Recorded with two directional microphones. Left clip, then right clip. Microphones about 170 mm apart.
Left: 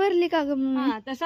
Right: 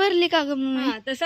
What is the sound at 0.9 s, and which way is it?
Speech, 55° left (ahead or behind).